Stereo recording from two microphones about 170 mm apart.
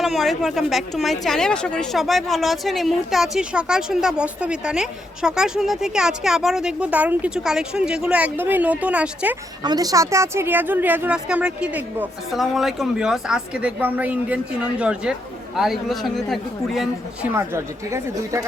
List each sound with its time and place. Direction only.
0.0 s speech: centre (ahead or behind)
9.6 s speech: 20° right (ahead or behind); by 16.9 s centre (ahead or behind)
17.3 s speech: 15° right (ahead or behind)